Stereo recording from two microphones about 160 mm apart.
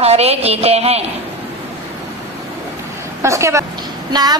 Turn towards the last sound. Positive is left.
turn(degrees=-25)  # may be behind; listen again after turning